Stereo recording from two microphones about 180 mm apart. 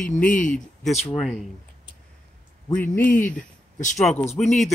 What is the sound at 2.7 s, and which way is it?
Speech, 10° left (ahead or behind).